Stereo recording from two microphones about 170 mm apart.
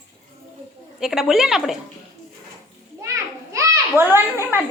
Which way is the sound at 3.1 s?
20° right (ahead or behind).